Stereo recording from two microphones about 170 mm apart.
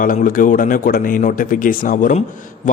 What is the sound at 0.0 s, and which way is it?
A man's voice, 50° left (ahead or behind).